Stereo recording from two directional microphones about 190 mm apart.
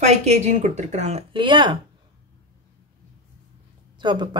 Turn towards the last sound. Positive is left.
turn(degrees=-25)  # may be behind; listen again after turning